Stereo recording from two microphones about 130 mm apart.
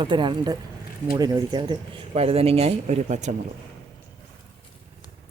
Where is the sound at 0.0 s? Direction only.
35° right (ahead or behind); by 3.3 s 65° right (ahead or behind).